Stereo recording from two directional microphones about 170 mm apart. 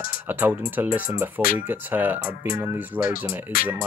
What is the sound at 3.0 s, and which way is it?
Speech, 55° left (ahead or behind).